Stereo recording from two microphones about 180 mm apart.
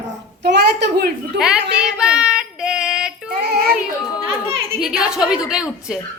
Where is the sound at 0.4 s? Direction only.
65° right (ahead or behind).